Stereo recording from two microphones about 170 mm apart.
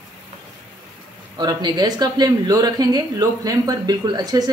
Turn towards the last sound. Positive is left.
turn(degrees=-25)  # may be behind; listen again after turning